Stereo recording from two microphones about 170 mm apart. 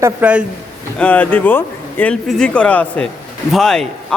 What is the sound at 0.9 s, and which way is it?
Speech, 10° left (ahead or behind).